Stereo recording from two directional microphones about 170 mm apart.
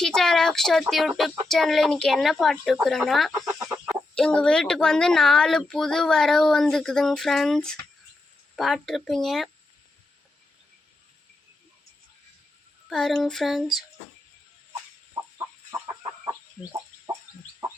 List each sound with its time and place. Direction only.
0.0 s speech: 5° left (ahead or behind)
3.4 s chicken: 20° right (ahead or behind)
3.8 s speech: 5° left (ahead or behind)
12.9 s speech: centre (ahead or behind)
15.7 s chicken: 20° right (ahead or behind)